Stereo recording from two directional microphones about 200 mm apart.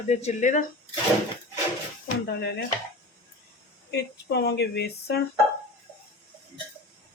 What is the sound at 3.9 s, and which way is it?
Speech, 55° left (ahead or behind).